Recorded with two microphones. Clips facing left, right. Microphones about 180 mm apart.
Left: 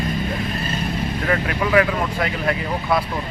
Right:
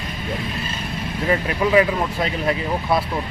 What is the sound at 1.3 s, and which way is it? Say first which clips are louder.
Speech: right 2 dB; 20° right (ahead or behind).